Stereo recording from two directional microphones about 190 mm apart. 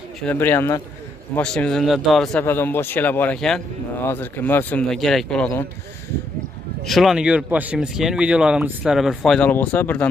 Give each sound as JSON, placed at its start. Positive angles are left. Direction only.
{"t": 0.2, "sound": "speech", "side_deg": 10}
{"t": 6.9, "sound": "speech", "side_deg": 0}